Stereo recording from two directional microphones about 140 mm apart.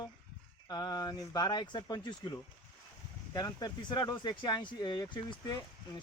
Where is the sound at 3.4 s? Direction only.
30° left (ahead or behind).